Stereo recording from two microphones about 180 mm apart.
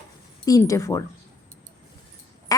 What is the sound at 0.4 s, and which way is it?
Speech, 20° left (ahead or behind).